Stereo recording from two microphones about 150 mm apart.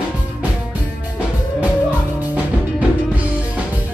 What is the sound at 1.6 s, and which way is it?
Music, 10° right (ahead or behind).